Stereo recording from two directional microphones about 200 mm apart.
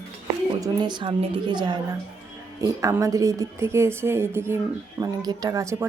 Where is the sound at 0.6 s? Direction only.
20° right (ahead or behind).